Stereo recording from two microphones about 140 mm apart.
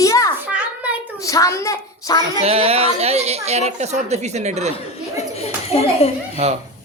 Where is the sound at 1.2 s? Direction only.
25° left (ahead or behind).